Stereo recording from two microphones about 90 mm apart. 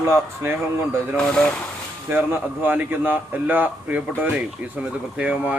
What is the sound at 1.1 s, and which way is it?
Speech, 10° left (ahead or behind).